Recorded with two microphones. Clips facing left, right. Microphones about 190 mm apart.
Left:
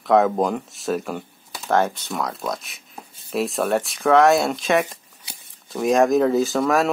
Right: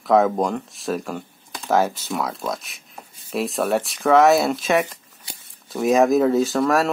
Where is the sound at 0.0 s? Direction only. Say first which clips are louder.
Even; centre (ahead or behind).